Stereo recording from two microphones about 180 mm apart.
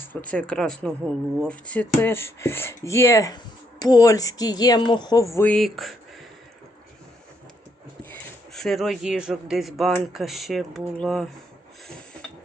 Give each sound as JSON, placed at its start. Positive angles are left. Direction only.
{"t": 0.0, "sound": "speech", "side_deg": 10}
{"t": 8.1, "sound": "speech", "side_deg": 0}